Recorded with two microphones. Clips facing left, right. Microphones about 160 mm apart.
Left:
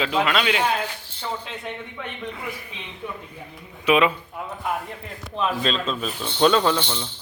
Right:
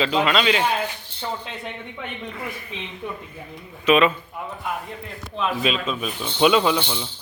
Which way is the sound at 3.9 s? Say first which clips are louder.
Right 1 dB; 15° left (ahead or behind).